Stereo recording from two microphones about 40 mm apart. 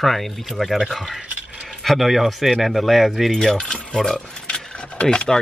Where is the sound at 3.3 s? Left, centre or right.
Centre.